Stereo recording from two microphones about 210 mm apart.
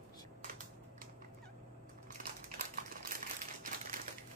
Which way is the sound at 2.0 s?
40° right (ahead or behind).